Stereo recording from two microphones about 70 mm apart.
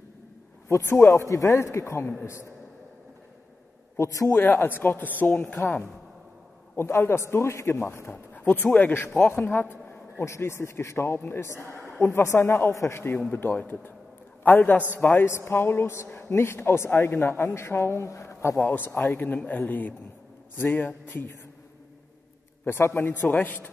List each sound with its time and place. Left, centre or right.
0.7 s a man's voice: left
3.9 s a man's voice: left
4.3 s a man's voice: left
8.4 s a man's voice: left
18.6 s speech: left
18.9 s a man's voice: left
19.1 s speech: left
22.7 s speech: left